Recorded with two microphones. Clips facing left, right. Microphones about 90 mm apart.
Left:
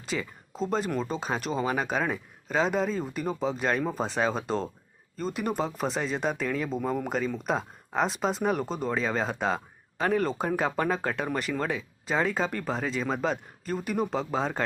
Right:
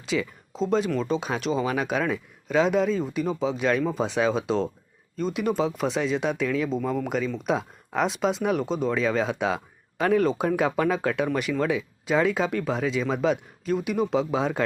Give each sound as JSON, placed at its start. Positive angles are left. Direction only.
{"t": 0.1, "sound": "speech", "side_deg": 5}